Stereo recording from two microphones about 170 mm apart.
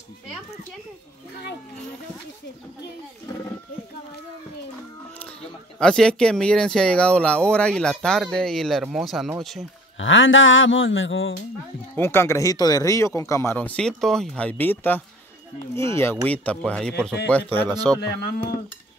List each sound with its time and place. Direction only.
5.8 s speech: 5° left (ahead or behind)
9.9 s a sound: 90° left
11.9 s speech: 15° left (ahead or behind)
18.0 s speech: 70° left (ahead or behind)